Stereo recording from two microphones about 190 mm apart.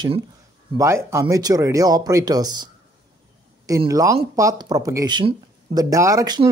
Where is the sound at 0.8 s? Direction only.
15° right (ahead or behind).